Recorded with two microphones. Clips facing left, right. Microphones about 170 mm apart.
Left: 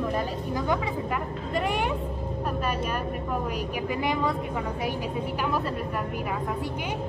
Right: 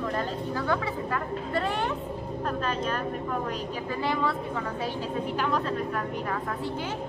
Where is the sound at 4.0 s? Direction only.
15° left (ahead or behind).